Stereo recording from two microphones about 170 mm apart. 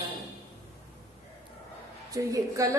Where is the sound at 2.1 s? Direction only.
20° right (ahead or behind).